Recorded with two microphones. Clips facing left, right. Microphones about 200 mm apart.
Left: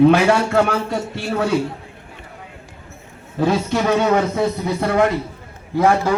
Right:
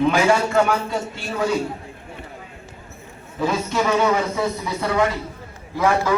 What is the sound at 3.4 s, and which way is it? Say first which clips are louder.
A man's voice: left 3 dB; 60° left (ahead or behind).